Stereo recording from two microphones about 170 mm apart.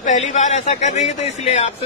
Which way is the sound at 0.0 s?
45° left (ahead or behind).